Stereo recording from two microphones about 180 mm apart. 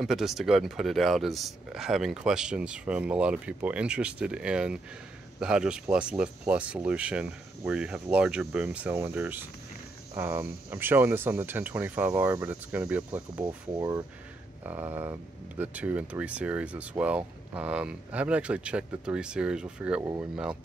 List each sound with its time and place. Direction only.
0.0 s speech: centre (ahead or behind)